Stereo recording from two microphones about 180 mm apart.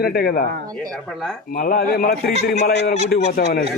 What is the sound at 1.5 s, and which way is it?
A man's voice, 50° left (ahead or behind).